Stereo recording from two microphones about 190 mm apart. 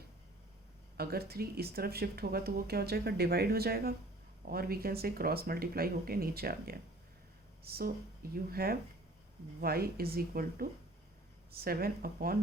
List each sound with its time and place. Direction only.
0.9 s speech: 55° right (ahead or behind)